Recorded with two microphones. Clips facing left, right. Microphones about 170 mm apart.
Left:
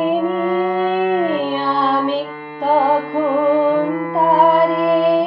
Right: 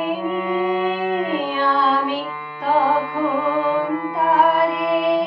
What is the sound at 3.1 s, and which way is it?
Music, 40° left (ahead or behind).